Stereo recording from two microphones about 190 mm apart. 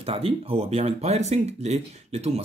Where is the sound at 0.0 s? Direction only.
30° right (ahead or behind).